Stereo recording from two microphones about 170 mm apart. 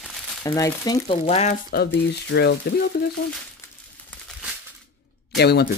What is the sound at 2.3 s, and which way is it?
Speech, 80° left.